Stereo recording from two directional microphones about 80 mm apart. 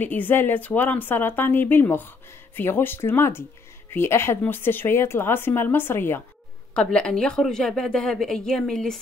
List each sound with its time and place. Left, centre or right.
0.0 s speech: left
6.7 s a woman's voice: centre